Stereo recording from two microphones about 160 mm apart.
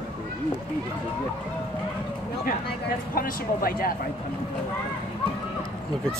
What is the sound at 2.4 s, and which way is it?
Speech, 65° left (ahead or behind).